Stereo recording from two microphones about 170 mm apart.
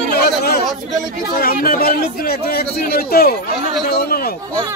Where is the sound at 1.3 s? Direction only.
60° left (ahead or behind).